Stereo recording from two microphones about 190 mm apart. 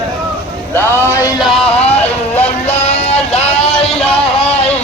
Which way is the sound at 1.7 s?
30° left (ahead or behind).